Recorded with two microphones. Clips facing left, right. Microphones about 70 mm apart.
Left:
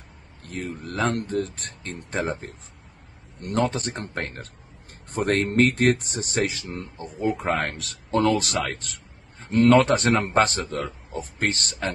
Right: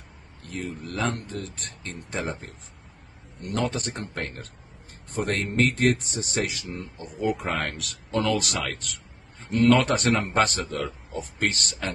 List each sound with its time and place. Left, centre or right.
0.4 s a man's voice: left
3.5 s speech: left